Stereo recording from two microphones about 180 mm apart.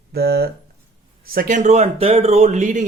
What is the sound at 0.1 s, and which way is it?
Speech, 60° right (ahead or behind).